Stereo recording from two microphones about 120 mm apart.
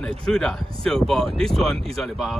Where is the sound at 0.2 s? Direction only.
5° left (ahead or behind).